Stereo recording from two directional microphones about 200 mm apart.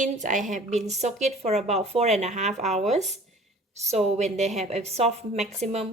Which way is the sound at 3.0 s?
Centre (ahead or behind).